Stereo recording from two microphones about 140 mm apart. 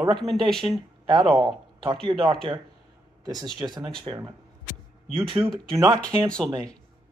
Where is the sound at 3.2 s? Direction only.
30° right (ahead or behind).